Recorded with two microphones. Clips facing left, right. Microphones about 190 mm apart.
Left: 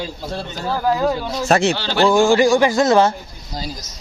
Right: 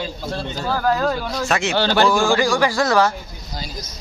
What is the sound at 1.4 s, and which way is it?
Speech, 40° left (ahead or behind).